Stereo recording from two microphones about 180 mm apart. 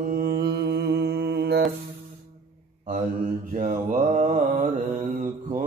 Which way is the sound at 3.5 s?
45° right (ahead or behind).